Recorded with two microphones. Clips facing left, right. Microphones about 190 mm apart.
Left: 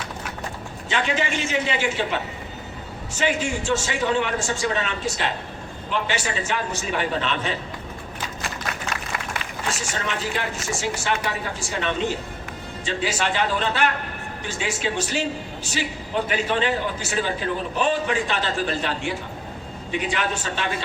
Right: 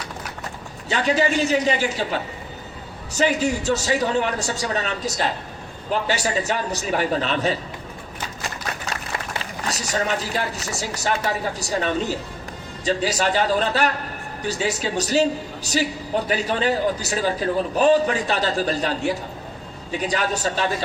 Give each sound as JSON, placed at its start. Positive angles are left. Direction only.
{"t": 0.9, "sound": "a woman's voice", "side_deg": -40}
{"t": 9.4, "sound": "a woman's voice", "side_deg": -40}